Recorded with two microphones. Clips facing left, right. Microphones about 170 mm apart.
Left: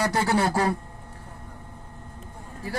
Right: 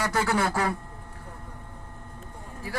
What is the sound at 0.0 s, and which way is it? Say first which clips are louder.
Speech: left 2 dB; 35° left (ahead or behind).